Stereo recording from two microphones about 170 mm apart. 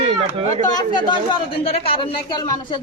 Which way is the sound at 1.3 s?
35° left (ahead or behind).